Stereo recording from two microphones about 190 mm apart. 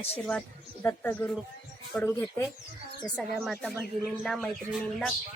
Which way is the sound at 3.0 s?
Centre (ahead or behind).